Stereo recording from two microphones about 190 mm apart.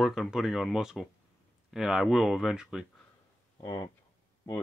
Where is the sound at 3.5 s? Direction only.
20° left (ahead or behind).